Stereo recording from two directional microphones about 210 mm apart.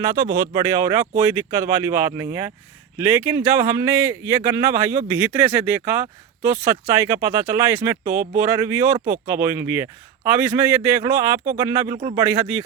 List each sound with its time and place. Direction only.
0.0 s speech: 15° right (ahead or behind)